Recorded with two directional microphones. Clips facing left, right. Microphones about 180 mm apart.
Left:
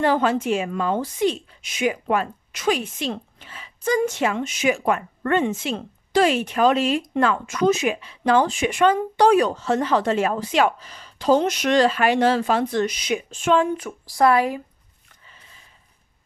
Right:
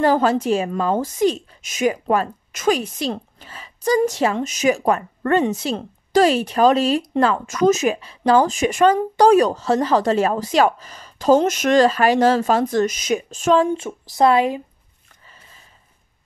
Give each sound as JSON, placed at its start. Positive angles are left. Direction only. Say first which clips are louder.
{"t": 0.0, "sound": "a woman's voice", "louder": "right 3 dB", "side_deg": -40}